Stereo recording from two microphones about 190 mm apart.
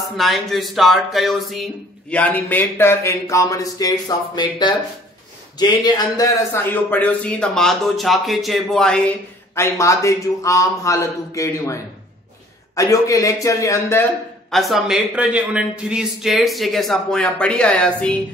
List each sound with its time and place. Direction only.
0.2 s a man's voice: centre (ahead or behind)
9.6 s speech: 15° left (ahead or behind)
14.5 s a man's voice: centre (ahead or behind)